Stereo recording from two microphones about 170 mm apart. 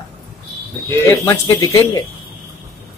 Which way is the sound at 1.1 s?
15° left (ahead or behind).